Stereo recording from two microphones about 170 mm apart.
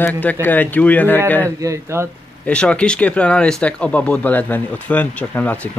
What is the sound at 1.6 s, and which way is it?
Speech, 15° right (ahead or behind).